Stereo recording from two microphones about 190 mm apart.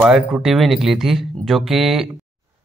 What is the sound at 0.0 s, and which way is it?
A man's voice, 5° right (ahead or behind).